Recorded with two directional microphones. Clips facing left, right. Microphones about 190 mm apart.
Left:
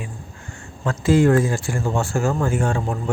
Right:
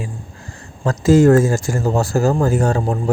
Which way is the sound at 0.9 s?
40° right (ahead or behind).